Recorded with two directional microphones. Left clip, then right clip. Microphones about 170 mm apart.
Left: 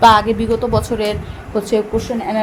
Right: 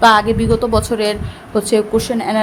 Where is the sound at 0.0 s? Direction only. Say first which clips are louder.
Even; 10° right (ahead or behind).